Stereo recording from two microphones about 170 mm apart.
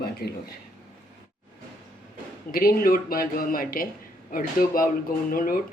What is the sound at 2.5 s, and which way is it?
Speech, 60° left (ahead or behind).